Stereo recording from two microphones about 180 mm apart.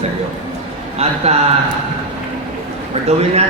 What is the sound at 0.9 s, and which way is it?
Speech, 35° right (ahead or behind).